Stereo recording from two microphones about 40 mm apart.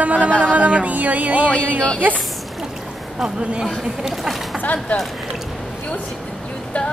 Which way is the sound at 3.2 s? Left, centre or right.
Right.